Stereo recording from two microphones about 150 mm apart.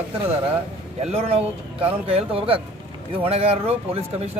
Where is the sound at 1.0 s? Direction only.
45° right (ahead or behind).